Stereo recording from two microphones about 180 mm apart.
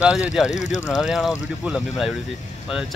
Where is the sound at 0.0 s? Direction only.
5° right (ahead or behind).